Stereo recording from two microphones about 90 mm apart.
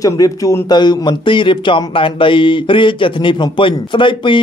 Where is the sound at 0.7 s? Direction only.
55° left (ahead or behind).